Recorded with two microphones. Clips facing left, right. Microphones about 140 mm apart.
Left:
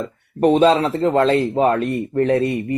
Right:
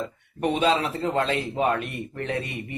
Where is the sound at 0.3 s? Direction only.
40° left (ahead or behind).